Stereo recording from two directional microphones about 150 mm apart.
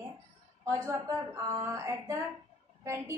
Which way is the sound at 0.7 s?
20° right (ahead or behind).